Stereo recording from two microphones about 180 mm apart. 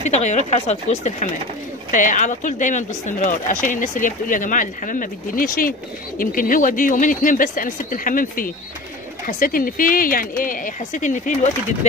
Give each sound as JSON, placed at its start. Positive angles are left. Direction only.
{"t": 0.0, "sound": "speech", "side_deg": 40}